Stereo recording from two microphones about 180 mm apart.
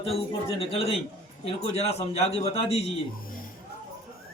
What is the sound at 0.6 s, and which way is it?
A man's voice, 30° left (ahead or behind).